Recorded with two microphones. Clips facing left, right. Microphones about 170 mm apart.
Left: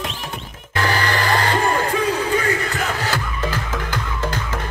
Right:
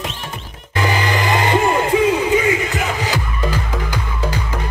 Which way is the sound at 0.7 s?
15° right (ahead or behind).